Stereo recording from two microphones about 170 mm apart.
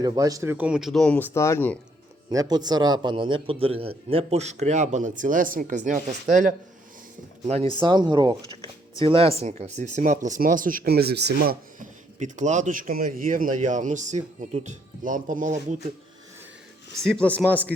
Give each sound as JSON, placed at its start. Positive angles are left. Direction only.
{"t": 0.0, "sound": "speech", "side_deg": -20}
{"t": 2.3, "sound": "a man's voice", "side_deg": -20}
{"t": 7.4, "sound": "speech", "side_deg": -35}
{"t": 11.8, "sound": "speech", "side_deg": -45}
{"t": 17.0, "sound": "speech", "side_deg": 5}